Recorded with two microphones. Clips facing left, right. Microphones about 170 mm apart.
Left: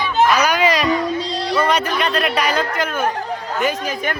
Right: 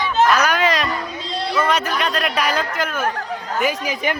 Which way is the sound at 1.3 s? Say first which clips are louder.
Right 2 dB; 35° left (ahead or behind).